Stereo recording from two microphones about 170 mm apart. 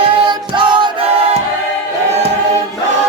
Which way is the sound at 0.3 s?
25° right (ahead or behind).